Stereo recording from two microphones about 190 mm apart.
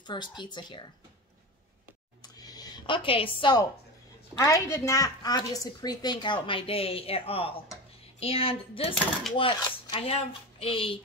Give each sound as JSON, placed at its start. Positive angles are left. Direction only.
{"t": 0.0, "sound": "a woman's voice", "side_deg": 25}
{"t": 2.2, "sound": "a sound", "side_deg": 20}
{"t": 4.4, "sound": "a woman's voice", "side_deg": 15}